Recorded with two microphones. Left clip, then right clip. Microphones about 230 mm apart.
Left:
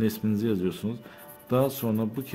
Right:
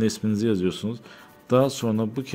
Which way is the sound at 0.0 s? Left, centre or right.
Centre.